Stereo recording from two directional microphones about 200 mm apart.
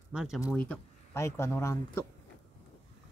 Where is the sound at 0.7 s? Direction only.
15° left (ahead or behind).